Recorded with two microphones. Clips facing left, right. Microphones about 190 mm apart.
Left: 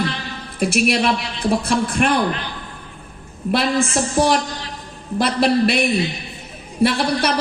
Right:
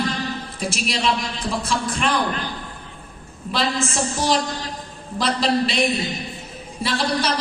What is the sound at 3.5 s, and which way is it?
Speech, 60° left (ahead or behind).